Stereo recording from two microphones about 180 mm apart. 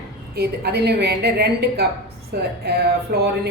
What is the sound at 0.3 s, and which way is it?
A woman's voice, 65° right (ahead or behind).